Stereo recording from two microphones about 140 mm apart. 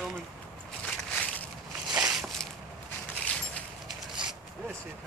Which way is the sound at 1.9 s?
10° right (ahead or behind).